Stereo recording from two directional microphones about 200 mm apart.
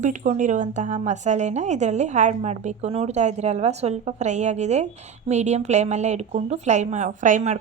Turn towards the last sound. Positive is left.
turn(degrees=-40)  # may be behind; listen again after turning